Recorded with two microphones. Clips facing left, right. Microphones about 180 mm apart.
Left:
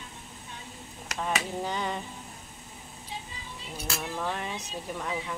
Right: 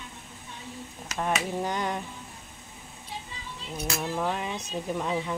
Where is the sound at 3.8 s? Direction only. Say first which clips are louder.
Right 4 dB; 15° right (ahead or behind).